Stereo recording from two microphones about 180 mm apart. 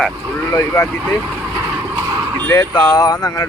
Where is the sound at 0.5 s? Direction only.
15° left (ahead or behind).